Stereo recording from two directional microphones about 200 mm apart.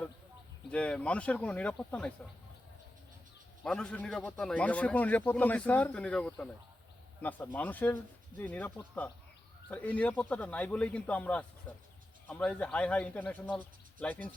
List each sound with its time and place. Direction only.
0.7 s speech: 5° left (ahead or behind)
3.6 s a man's voice: 5° left (ahead or behind)